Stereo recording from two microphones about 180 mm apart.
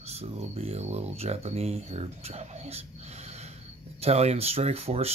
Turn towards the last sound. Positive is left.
turn(degrees=-35)  # may be behind; listen again after turning